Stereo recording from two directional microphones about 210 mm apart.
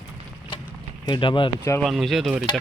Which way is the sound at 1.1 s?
25° left (ahead or behind).